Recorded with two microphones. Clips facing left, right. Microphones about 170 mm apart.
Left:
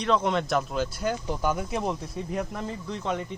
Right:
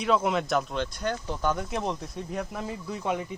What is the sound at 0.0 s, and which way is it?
Speech, 5° right (ahead or behind).